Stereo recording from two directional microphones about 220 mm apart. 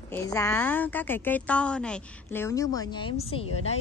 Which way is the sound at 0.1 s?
15° left (ahead or behind).